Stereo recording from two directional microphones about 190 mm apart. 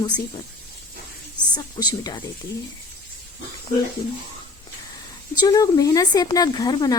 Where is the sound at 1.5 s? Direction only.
20° left (ahead or behind).